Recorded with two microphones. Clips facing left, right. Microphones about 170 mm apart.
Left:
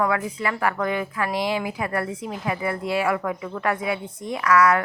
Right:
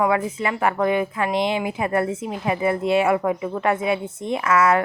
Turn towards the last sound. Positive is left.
turn(degrees=-25)  # may be behind; listen again after turning